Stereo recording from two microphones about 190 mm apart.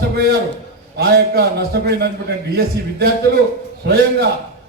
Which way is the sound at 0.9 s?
60° right (ahead or behind).